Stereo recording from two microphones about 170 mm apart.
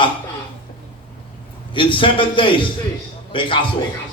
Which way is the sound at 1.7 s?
30° left (ahead or behind).